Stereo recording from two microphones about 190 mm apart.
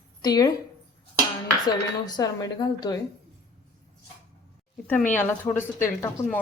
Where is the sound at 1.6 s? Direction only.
20° left (ahead or behind).